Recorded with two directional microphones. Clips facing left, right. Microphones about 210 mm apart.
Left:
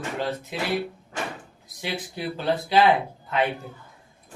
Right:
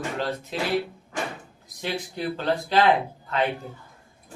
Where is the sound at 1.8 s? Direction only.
10° left (ahead or behind).